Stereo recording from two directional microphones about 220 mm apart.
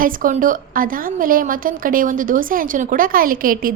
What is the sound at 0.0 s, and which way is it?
A woman's voice, 40° right (ahead or behind).